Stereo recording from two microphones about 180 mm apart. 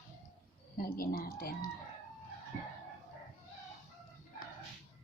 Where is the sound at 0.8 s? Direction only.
55° left (ahead or behind).